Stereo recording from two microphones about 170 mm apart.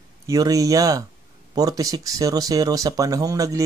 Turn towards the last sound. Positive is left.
turn(degrees=-20)  # may be behind; listen again after turning